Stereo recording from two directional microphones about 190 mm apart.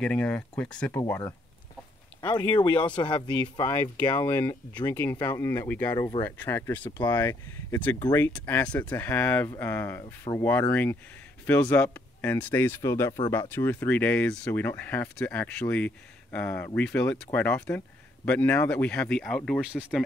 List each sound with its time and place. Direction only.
0.0 s speech: 5° left (ahead or behind)
2.2 s speech: 25° left (ahead or behind)
3.7 s speech: 10° left (ahead or behind)